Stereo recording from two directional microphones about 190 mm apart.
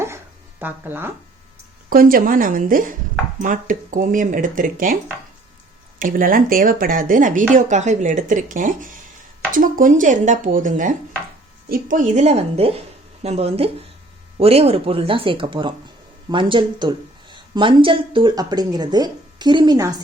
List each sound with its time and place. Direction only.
0.6 s speech: 10° right (ahead or behind)
1.9 s speech: 50° right (ahead or behind)
6.0 s speech: 45° right (ahead or behind); by 20.0 s 20° right (ahead or behind)